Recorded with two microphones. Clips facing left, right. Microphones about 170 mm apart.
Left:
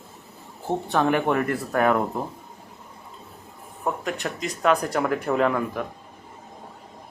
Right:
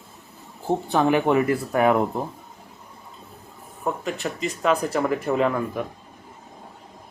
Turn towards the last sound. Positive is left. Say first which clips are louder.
# even
turn(degrees=0)  # may be behind; listen again after turning